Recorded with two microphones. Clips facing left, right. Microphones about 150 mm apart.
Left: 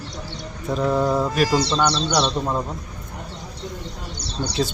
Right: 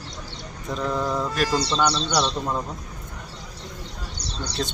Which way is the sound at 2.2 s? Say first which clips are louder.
Left 3 dB; 15° left (ahead or behind).